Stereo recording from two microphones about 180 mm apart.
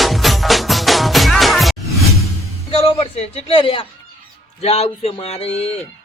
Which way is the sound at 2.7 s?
30° left (ahead or behind).